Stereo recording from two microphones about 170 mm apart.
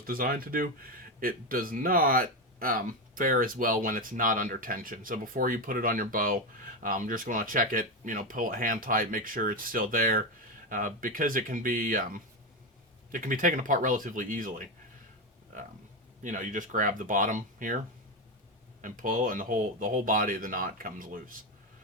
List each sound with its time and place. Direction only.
0.0 s speech: 60° right (ahead or behind)
16.2 s speech: 50° right (ahead or behind)
18.8 s speech: 50° right (ahead or behind)